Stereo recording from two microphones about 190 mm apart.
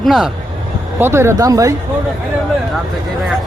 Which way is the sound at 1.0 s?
15° right (ahead or behind).